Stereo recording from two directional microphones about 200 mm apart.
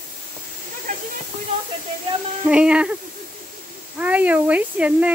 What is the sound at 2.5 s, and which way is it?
Speech, 5° right (ahead or behind).